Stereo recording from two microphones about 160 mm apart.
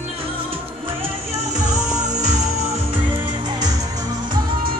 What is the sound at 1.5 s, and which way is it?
Music, 45° right (ahead or behind).